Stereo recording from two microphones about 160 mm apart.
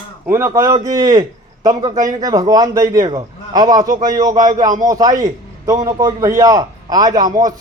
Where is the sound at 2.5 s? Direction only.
20° right (ahead or behind).